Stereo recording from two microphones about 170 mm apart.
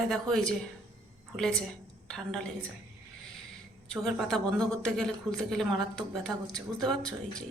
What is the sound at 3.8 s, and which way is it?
A woman's voice, centre (ahead or behind).